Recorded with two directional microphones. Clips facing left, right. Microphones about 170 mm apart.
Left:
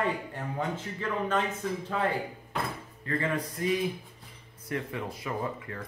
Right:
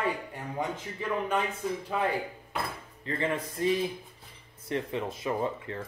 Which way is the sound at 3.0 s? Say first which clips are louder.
Even; 20° right (ahead or behind).